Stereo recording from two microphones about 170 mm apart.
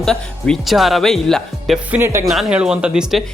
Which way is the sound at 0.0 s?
5° left (ahead or behind).